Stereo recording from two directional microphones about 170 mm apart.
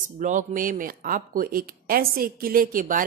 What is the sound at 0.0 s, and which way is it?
Speech, 50° right (ahead or behind).